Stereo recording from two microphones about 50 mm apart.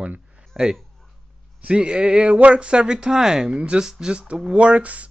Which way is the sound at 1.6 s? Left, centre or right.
Right.